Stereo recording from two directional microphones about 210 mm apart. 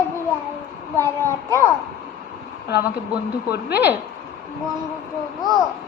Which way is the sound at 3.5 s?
50° left (ahead or behind).